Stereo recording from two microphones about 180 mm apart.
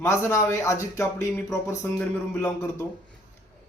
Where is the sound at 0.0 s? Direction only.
15° left (ahead or behind).